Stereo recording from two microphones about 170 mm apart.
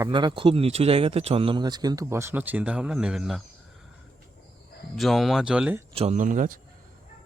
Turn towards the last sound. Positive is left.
turn(degrees=-50)  # may be behind; listen again after turning